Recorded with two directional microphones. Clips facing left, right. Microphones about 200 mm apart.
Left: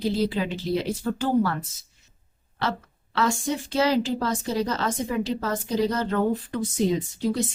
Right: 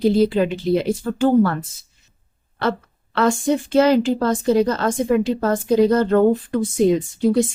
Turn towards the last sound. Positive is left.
turn(degrees=-50)  # may be behind; listen again after turning